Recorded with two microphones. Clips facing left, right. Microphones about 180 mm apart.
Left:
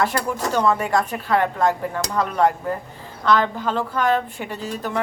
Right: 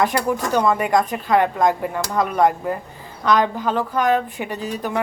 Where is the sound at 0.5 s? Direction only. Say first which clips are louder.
Right 1 dB; 15° right (ahead or behind).